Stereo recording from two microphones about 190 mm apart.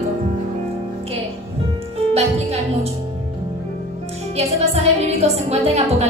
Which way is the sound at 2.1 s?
30° right (ahead or behind).